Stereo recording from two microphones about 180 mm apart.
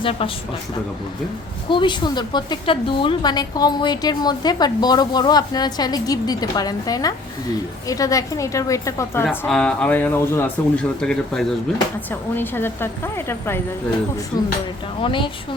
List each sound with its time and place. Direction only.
0.0 s speech: 30° left (ahead or behind)
1.7 s a woman's voice: 25° left (ahead or behind)
15.0 s a woman's voice: 30° left (ahead or behind)